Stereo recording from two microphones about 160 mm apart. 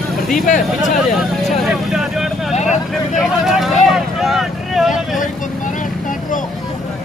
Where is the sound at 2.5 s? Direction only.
45° left (ahead or behind).